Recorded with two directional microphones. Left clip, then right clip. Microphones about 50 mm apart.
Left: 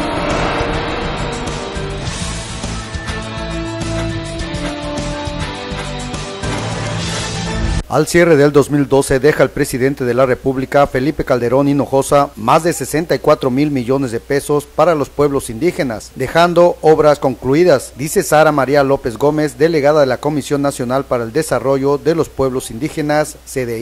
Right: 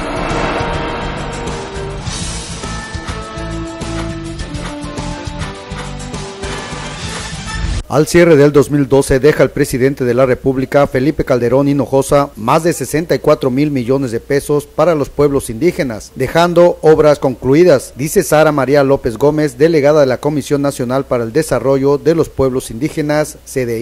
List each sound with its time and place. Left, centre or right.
7.9 s a man's voice: centre